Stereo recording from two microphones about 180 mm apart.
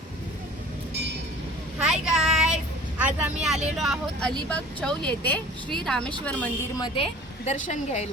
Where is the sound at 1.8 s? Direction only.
5° right (ahead or behind).